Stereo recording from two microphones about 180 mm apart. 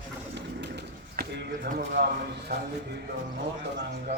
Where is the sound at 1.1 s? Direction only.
65° right (ahead or behind).